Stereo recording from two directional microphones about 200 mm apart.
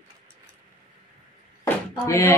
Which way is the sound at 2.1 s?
15° left (ahead or behind).